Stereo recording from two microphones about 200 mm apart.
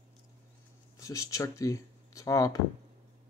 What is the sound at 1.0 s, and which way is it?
Speech, 15° left (ahead or behind).